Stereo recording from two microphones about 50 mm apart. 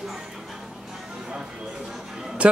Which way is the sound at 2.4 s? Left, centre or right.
Right.